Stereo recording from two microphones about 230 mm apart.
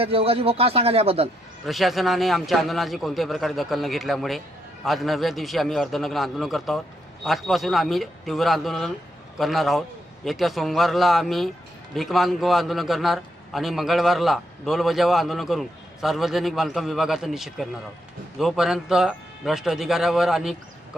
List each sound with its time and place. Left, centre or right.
0.0 s speech: right
1.6 s a man's voice: centre